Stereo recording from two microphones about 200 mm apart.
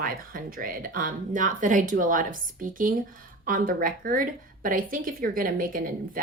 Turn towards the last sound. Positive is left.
turn(degrees=-45)  # may be behind; listen again after turning